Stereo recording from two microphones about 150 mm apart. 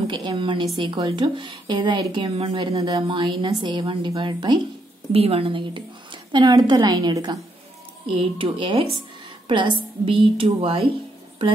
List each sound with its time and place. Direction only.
0.0 s a woman's voice: 30° right (ahead or behind)